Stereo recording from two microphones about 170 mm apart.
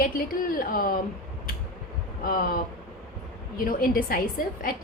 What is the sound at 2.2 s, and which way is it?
Speech, 55° left (ahead or behind).